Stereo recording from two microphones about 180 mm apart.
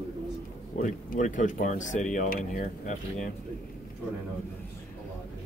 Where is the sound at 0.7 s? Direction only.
45° left (ahead or behind).